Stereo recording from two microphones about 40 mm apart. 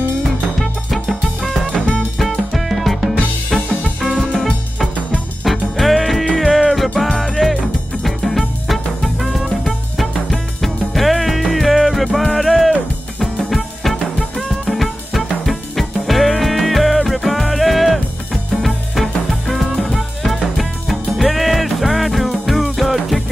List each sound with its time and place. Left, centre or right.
0.6 s music: centre
1.7 s music: left
2.8 s music: centre
5.4 s music: centre
14.5 s drum kit: centre
15.4 s music: centre